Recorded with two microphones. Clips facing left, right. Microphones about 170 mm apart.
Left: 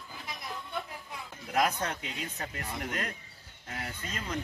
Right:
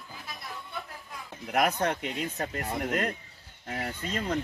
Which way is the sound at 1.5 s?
60° right (ahead or behind).